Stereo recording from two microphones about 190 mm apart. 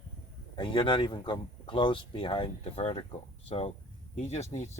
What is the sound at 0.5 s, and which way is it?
Speech, 25° left (ahead or behind).